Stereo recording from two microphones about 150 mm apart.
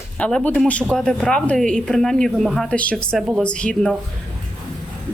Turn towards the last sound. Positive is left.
turn(degrees=5)  # may be behind; listen again after turning